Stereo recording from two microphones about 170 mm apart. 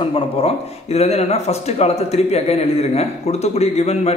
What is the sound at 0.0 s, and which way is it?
Speech, 35° left (ahead or behind).